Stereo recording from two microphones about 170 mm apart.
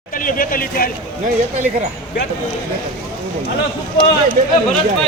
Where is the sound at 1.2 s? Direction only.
45° right (ahead or behind).